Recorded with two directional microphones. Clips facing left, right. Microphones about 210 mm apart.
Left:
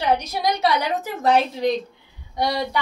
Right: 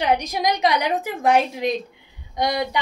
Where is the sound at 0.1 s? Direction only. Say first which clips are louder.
Left 1 dB; 15° right (ahead or behind).